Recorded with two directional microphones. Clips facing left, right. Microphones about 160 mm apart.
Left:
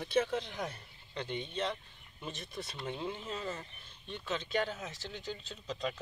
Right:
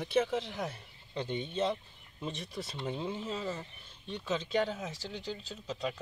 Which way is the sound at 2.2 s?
25° right (ahead or behind).